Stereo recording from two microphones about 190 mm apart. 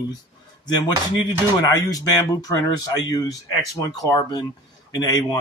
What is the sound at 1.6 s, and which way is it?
Speech, 20° left (ahead or behind).